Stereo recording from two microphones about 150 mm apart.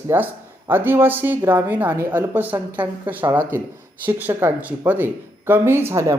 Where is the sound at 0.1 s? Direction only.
15° right (ahead or behind).